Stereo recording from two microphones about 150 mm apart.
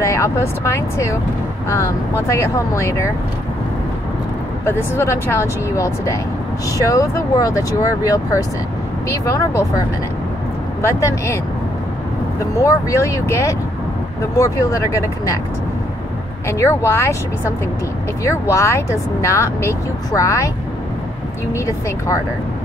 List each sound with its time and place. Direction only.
0.0 s speech: 20° left (ahead or behind)
4.6 s speech: 15° left (ahead or behind)
10.8 s speech: 20° left (ahead or behind)
12.4 s speech: 20° left (ahead or behind)
16.4 s speech: 20° left (ahead or behind)
18.2 s speech: 20° left (ahead or behind)
21.5 s speech: 20° left (ahead or behind)